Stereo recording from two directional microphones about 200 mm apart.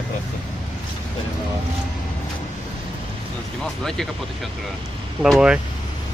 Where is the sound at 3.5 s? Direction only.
Centre (ahead or behind).